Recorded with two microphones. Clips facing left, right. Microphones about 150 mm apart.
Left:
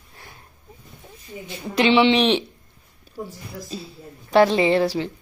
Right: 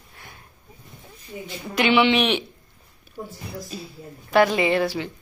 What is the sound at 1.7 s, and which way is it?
Speech, 30° left (ahead or behind).